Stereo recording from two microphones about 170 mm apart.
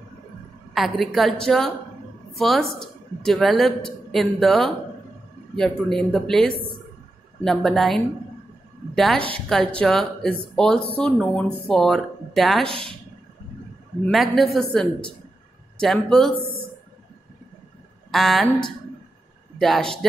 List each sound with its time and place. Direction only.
0.7 s a woman's voice: centre (ahead or behind)
6.5 s a woman's voice: 65° right (ahead or behind)
7.4 s a woman's voice: centre (ahead or behind)
12.6 s speech: 30° right (ahead or behind)
14.0 s a woman's voice: centre (ahead or behind)
18.1 s a woman's voice: centre (ahead or behind)
19.6 s a woman's voice: centre (ahead or behind)